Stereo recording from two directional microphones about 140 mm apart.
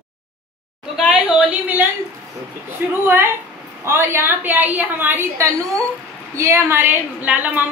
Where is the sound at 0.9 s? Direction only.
Centre (ahead or behind).